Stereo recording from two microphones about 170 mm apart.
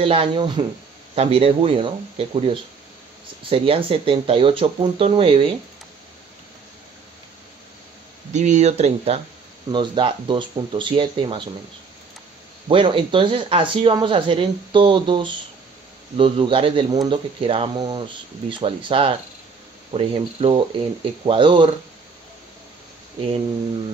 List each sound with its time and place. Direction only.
0.0 s speech: 35° right (ahead or behind)
8.3 s speech: 45° right (ahead or behind); by 11.4 s 30° right (ahead or behind)
12.6 s speech: 30° right (ahead or behind)